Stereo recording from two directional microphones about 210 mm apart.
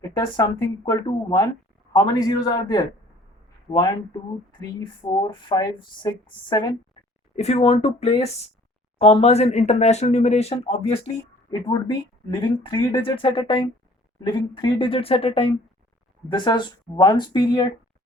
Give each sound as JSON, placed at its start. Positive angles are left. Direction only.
{"t": 0.9, "sound": "speech", "side_deg": 20}